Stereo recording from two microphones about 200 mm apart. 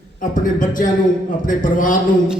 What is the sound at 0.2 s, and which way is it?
A man's voice, 40° left (ahead or behind).